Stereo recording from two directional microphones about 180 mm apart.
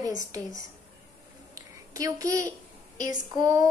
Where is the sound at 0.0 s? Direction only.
20° right (ahead or behind).